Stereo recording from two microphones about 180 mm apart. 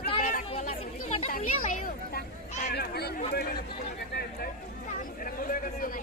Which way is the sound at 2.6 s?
60° left (ahead or behind).